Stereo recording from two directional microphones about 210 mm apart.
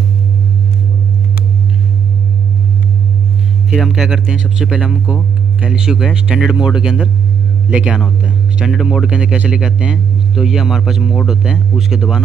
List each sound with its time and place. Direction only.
3.7 s speech: centre (ahead or behind)